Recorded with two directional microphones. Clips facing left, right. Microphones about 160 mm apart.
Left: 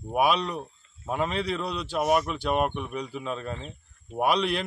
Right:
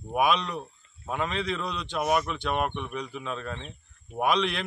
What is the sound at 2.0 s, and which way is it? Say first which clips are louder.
Speech: left 2 dB; 45° left (ahead or behind).